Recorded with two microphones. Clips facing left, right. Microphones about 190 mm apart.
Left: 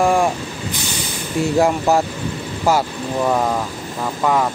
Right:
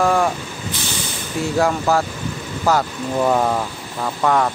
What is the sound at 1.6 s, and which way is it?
Speech, 15° left (ahead or behind).